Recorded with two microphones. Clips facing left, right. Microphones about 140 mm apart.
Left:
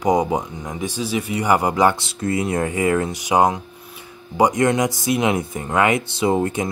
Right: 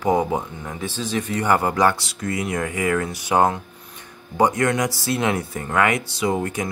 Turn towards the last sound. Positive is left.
turn(degrees=25)  # may be behind; listen again after turning